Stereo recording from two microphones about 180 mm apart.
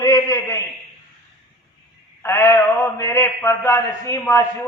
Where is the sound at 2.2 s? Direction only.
15° left (ahead or behind).